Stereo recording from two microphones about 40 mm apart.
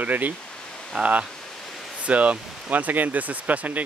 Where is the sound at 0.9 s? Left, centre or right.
Right.